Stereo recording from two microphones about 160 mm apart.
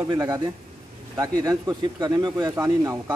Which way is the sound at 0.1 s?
25° right (ahead or behind).